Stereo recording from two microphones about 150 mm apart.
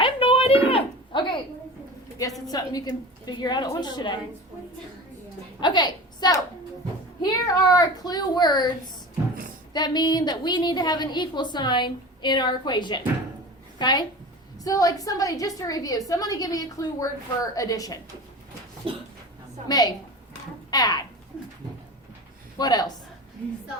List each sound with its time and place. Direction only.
0.0 s a sound: 35° left (ahead or behind)
2.5 s a woman's voice: 25° left (ahead or behind)
5.5 s a woman's voice: 30° left (ahead or behind)
9.7 s a woman's voice: 30° left (ahead or behind)
18.8 s a sound: 40° right (ahead or behind)
19.6 s a woman's voice: 25° left (ahead or behind)
22.5 s a woman's voice: 25° left (ahead or behind)